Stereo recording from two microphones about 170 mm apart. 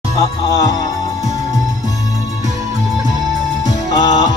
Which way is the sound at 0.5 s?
20° left (ahead or behind).